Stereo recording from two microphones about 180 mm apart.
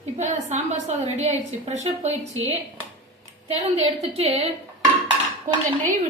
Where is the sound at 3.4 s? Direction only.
35° right (ahead or behind).